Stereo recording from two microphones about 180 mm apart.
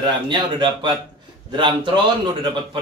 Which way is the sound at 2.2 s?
25° right (ahead or behind).